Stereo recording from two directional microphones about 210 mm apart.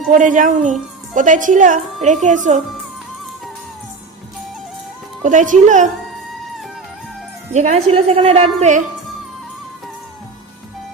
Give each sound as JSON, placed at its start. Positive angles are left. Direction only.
{"t": 0.1, "sound": "a woman's voice", "side_deg": -40}
{"t": 5.2, "sound": "a woman's voice", "side_deg": -35}
{"t": 7.5, "sound": "a woman's voice", "side_deg": -35}